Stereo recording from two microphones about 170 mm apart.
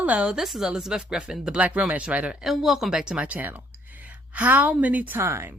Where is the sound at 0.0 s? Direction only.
5° right (ahead or behind).